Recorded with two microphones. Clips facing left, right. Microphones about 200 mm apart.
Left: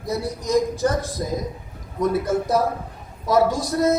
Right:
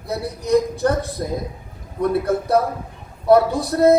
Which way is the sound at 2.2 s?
60° right (ahead or behind).